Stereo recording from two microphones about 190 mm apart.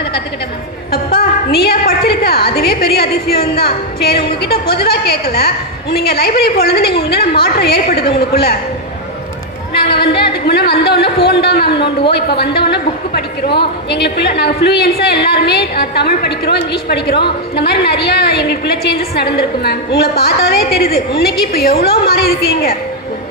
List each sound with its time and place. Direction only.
0.9 s a woman's voice: 55° left (ahead or behind)
9.7 s a sound: 60° left (ahead or behind)
10.4 s a woman's voice: 55° left (ahead or behind)